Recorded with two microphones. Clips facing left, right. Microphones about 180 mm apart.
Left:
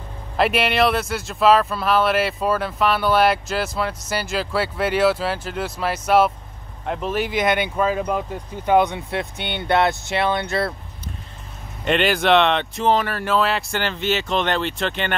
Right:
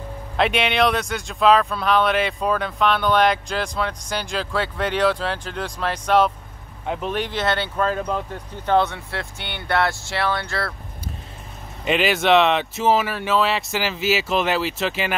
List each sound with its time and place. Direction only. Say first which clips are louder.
0.4 s speech: left 1 dB; 5° left (ahead or behind); by 10.7 s 20° left (ahead or behind)
11.8 s speech: left 1 dB; centre (ahead or behind)